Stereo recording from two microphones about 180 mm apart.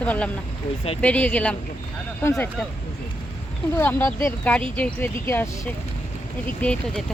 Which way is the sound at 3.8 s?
10° left (ahead or behind).